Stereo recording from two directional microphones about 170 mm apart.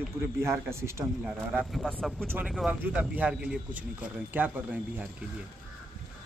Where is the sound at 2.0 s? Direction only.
Centre (ahead or behind).